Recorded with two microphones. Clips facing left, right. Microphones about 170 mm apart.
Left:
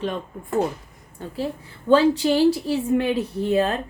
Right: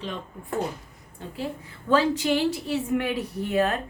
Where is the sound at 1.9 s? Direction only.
30° left (ahead or behind).